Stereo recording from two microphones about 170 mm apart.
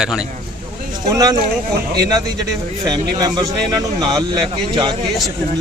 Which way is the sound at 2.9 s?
25° right (ahead or behind).